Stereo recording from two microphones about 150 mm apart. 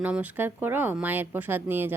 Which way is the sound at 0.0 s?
10° right (ahead or behind).